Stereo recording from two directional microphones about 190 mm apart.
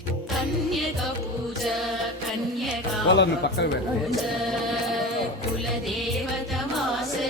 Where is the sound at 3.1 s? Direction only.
65° left (ahead or behind).